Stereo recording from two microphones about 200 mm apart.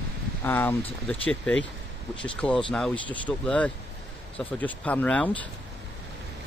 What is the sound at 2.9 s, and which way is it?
Speech, 25° left (ahead or behind).